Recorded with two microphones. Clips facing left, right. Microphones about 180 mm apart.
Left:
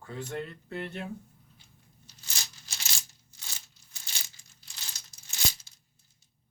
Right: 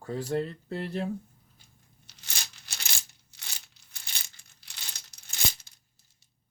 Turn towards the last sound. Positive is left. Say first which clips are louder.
# right 1 dB
turn(degrees=-60)  # may be behind; listen again after turning